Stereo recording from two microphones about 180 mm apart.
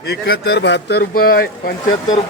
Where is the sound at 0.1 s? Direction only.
60° left (ahead or behind).